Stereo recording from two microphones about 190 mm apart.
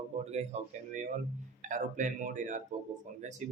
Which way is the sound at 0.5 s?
35° right (ahead or behind).